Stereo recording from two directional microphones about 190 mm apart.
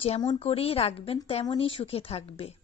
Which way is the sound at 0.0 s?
30° left (ahead or behind).